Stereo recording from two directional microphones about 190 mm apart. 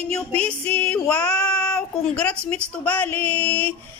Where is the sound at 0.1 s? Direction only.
5° left (ahead or behind).